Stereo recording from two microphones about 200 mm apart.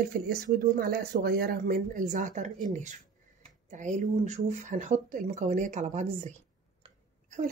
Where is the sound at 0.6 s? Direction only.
50° right (ahead or behind).